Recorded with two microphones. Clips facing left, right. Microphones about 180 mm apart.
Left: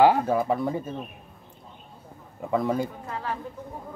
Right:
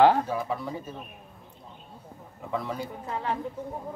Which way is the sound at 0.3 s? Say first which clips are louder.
Left 6 dB; 50° left (ahead or behind).